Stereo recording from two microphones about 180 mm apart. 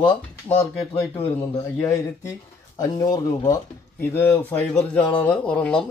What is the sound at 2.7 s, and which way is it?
Speech, 20° left (ahead or behind).